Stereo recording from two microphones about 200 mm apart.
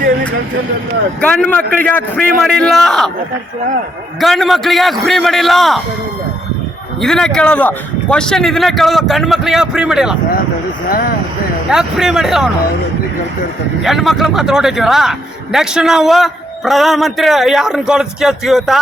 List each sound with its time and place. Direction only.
1.2 s a man's voice: 5° left (ahead or behind)
4.2 s a man's voice: centre (ahead or behind)
7.0 s a man's voice: 5° left (ahead or behind)
10.8 s speech: 45° left (ahead or behind)
11.7 s a man's voice: 5° right (ahead or behind)
13.8 s a man's voice: centre (ahead or behind)